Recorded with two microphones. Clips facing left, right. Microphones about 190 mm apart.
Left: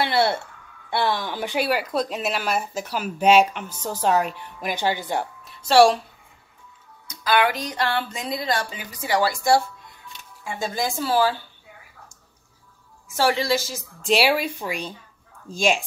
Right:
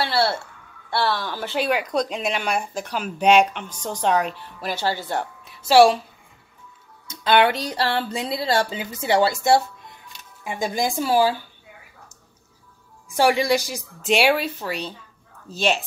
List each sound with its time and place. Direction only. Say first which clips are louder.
0.0 s speech: left 1 dB; 20° left (ahead or behind)
5.4 s a woman's voice: right 1 dB; centre (ahead or behind)
7.1 s speech: right 3 dB; 25° right (ahead or behind)
13.1 s speech: right 3 dB; 15° right (ahead or behind)
14.0 s speech: right 1 dB; centre (ahead or behind)
14.3 s speech: right 1 dB; 10° left (ahead or behind)